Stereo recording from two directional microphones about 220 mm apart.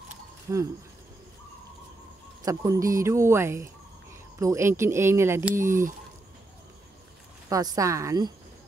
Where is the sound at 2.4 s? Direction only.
15° right (ahead or behind).